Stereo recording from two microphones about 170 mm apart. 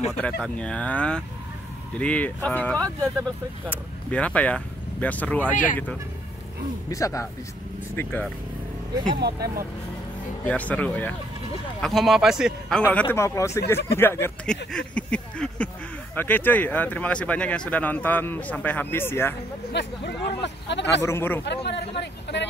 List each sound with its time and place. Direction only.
0.2 s speech: 5° left (ahead or behind)
3.0 s speech: 15° right (ahead or behind)
3.7 s speech: 10° left (ahead or behind)
6.9 s a man's voice: 20° left (ahead or behind)
9.1 s speech: 75° right (ahead or behind)
10.4 s a man's voice: 10° left (ahead or behind)
19.7 s speech: 90° left
21.0 s speech: 15° left (ahead or behind)
21.5 s speech: 90° left